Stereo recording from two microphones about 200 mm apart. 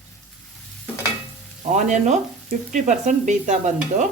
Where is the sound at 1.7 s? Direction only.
35° right (ahead or behind).